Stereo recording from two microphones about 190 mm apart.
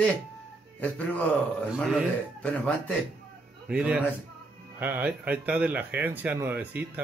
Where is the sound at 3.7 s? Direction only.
5° right (ahead or behind).